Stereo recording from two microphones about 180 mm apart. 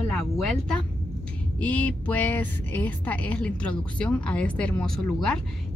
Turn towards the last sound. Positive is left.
turn(degrees=5)  # may be behind; listen again after turning